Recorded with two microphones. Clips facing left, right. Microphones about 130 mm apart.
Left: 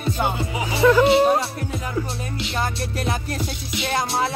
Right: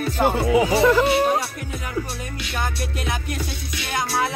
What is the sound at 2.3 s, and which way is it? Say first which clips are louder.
Music: left 2 dB; 25° left (ahead or behind).